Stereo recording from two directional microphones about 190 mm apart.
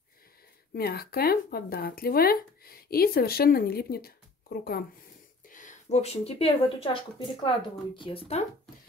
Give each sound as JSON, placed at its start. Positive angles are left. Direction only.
{"t": 0.7, "sound": "speech", "side_deg": 55}
{"t": 5.5, "sound": "speech", "side_deg": 40}